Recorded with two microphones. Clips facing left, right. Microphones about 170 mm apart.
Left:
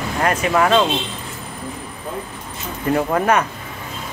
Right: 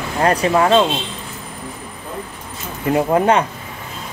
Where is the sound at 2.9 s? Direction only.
25° right (ahead or behind).